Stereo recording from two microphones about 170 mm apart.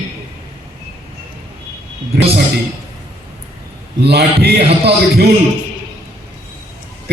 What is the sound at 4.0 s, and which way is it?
A man's voice, 70° right (ahead or behind).